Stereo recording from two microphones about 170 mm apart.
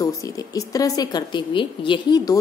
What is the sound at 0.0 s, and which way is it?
A woman's voice, 20° left (ahead or behind).